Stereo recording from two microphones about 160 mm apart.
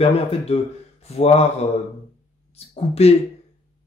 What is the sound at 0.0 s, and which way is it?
Speech, 35° left (ahead or behind).